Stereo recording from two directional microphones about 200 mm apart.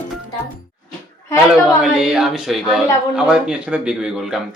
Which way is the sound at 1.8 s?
5° right (ahead or behind).